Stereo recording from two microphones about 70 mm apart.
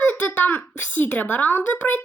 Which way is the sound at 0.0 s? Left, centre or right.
Left.